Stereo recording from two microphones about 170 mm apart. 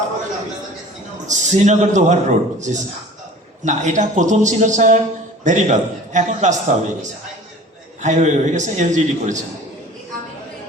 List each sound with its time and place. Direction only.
1.3 s a man's voice: 45° right (ahead or behind)